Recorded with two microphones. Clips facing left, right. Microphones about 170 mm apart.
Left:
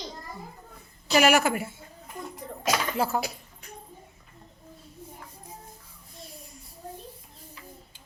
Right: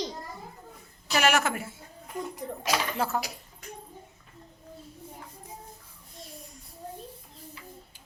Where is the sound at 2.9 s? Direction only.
10° left (ahead or behind).